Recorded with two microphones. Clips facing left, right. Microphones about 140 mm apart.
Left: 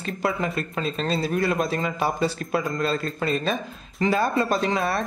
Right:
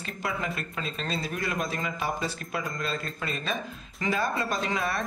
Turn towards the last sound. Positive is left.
turn(degrees=30)  # may be behind; listen again after turning